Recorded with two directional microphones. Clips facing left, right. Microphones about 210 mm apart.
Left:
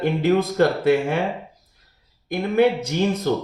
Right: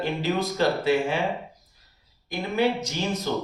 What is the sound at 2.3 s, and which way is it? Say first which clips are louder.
Speech: left 6 dB; 55° left (ahead or behind).